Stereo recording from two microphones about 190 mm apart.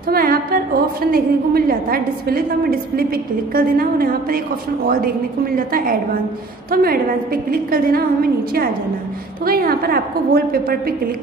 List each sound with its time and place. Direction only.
0.1 s music: 50° right (ahead or behind)
1.1 s a woman's voice: 50° right (ahead or behind)